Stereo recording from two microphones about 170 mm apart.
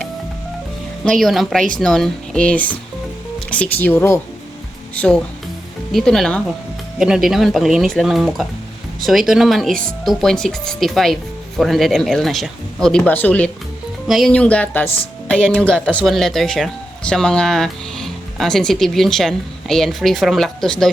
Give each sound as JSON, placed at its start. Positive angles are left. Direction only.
{"t": 1.2, "sound": "speech", "side_deg": 0}